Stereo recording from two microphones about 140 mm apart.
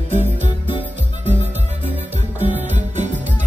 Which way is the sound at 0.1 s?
55° right (ahead or behind).